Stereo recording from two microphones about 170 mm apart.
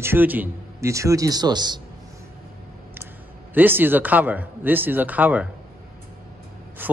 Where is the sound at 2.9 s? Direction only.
10° right (ahead or behind).